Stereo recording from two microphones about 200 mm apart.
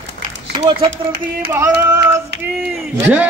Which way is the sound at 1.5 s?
10° right (ahead or behind).